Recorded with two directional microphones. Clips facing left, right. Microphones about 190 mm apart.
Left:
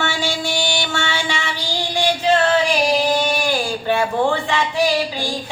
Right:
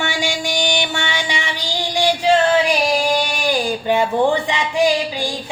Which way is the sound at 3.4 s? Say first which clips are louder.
Right 2 dB; 15° right (ahead or behind).